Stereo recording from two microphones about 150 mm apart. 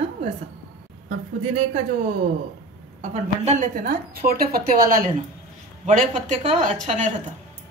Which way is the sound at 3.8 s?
80° right.